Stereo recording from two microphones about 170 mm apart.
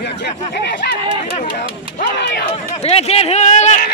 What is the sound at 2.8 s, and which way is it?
Speech, 40° left (ahead or behind).